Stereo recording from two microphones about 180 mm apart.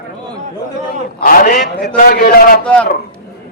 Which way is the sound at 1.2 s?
50° left (ahead or behind).